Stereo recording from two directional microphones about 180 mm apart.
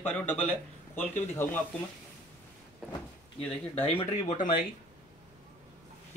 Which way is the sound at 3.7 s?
35° left (ahead or behind).